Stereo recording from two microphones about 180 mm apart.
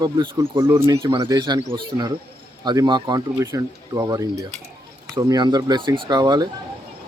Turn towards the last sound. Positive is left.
turn(degrees=-20)  # may be behind; listen again after turning